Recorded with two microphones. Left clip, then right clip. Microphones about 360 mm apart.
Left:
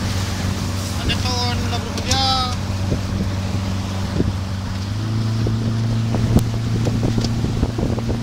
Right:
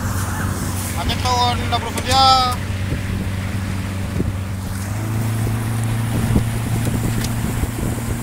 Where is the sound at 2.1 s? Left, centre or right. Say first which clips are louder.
Right 6 dB; centre.